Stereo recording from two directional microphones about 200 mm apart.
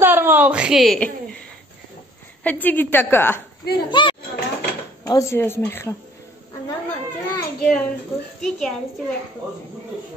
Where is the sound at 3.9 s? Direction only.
25° left (ahead or behind).